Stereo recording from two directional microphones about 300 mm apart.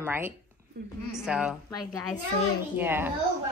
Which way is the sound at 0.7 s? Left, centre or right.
Right.